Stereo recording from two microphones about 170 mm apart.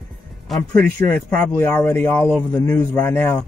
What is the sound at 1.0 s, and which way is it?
Speech, 10° left (ahead or behind).